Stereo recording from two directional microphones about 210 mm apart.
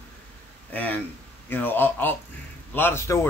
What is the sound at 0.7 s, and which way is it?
Speech, 10° left (ahead or behind).